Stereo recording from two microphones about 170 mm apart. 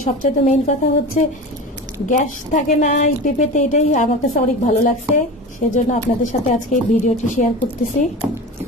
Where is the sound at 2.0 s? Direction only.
45° left (ahead or behind).